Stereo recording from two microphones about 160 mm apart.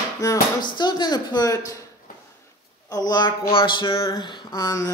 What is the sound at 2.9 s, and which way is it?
Speech, 25° left (ahead or behind).